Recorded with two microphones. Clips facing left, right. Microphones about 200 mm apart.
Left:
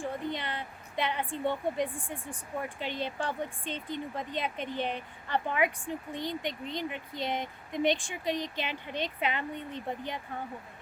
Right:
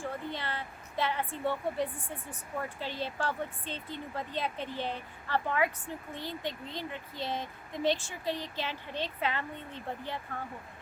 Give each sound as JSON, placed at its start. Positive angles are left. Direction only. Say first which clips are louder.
{"t": 0.0, "sound": "a woman's voice", "louder": "left 3 dB", "side_deg": 15}